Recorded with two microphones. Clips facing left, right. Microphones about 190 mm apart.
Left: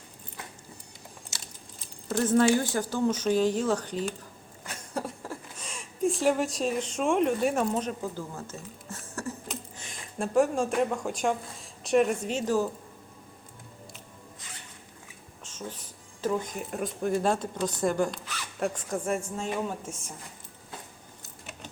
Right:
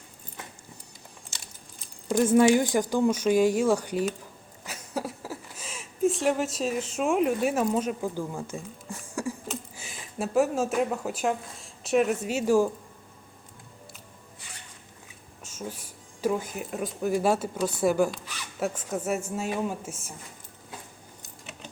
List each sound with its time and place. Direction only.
2.0 s speech: 10° right (ahead or behind)
15.4 s speech: 10° right (ahead or behind)